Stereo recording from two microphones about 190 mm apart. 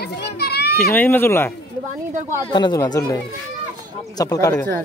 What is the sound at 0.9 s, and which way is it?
Speech, 10° left (ahead or behind).